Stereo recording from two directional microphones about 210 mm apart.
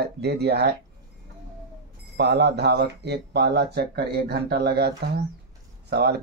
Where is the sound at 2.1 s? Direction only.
50° right (ahead or behind).